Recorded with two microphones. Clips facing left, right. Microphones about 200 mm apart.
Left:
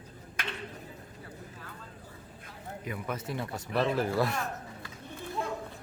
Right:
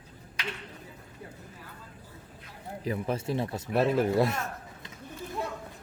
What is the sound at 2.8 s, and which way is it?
Speech, 30° right (ahead or behind).